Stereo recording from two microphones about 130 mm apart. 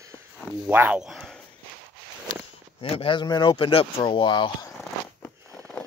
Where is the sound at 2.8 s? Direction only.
45° left (ahead or behind).